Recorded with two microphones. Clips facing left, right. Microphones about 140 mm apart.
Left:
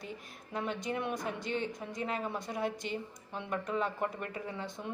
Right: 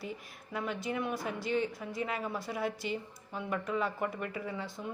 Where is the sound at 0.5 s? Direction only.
5° right (ahead or behind).